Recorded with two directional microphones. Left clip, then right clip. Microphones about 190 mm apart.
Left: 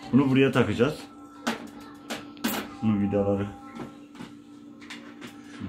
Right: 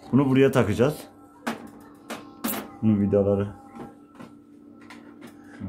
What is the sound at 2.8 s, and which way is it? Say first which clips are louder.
Speech: right 4 dB; 65° right (ahead or behind).